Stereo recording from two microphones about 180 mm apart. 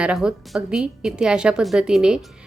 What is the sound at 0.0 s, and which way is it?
A woman's voice, 5° right (ahead or behind).